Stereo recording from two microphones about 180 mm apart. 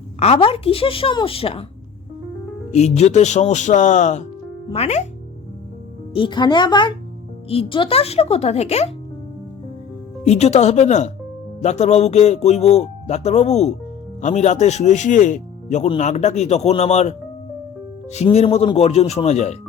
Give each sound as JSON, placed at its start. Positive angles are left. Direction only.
{"t": 0.2, "sound": "speech", "side_deg": 35}
{"t": 2.7, "sound": "speech", "side_deg": 35}
{"t": 6.1, "sound": "speech", "side_deg": 25}
{"t": 10.2, "sound": "speech", "side_deg": 40}